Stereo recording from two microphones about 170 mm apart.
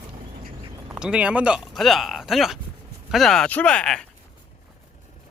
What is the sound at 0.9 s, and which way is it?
Speech, 5° right (ahead or behind).